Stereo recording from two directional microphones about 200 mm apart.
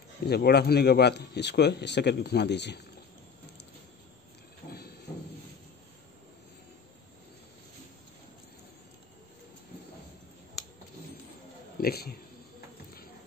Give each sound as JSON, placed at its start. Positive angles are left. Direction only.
{"t": 0.3, "sound": "speech", "side_deg": 55}
{"t": 4.6, "sound": "train", "side_deg": 50}
{"t": 11.8, "sound": "a man's voice", "side_deg": 50}